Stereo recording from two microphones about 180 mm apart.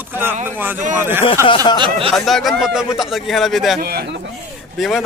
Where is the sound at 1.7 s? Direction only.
25° right (ahead or behind).